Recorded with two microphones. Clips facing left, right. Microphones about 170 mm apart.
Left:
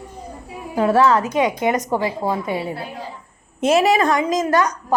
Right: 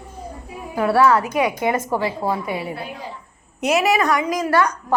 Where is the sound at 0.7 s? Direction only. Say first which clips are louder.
Left 1 dB; 25° left (ahead or behind).